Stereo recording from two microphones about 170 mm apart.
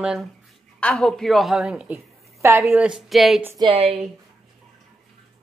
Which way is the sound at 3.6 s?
35° right (ahead or behind).